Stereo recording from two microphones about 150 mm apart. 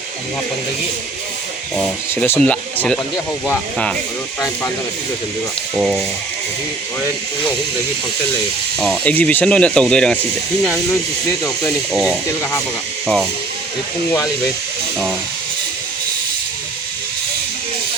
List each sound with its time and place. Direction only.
2.2 s speech: 10° left (ahead or behind)
5.7 s speech: centre (ahead or behind)
8.8 s speech: centre (ahead or behind)